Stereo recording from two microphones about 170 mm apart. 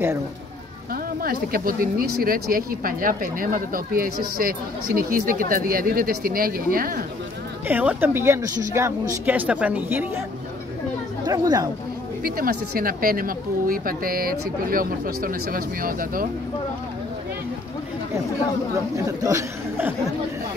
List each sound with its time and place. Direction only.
1.2 s speech: 60° right (ahead or behind)
7.6 s speech: 10° right (ahead or behind)
11.2 s speech: 25° right (ahead or behind)
12.2 s speech: 60° right (ahead or behind)
19.0 s speech: 20° right (ahead or behind)